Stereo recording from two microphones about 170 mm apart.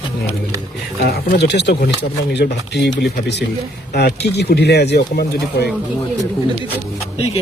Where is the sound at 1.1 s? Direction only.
80° left.